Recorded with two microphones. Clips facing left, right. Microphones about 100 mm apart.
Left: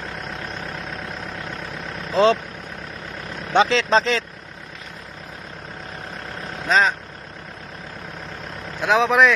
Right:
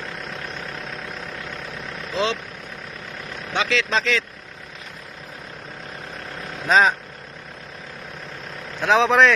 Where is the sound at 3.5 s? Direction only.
35° left (ahead or behind).